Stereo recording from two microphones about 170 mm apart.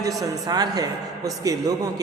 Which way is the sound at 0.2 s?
20° right (ahead or behind).